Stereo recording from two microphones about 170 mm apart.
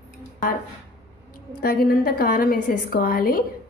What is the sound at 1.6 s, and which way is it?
A woman's voice, 60° left (ahead or behind).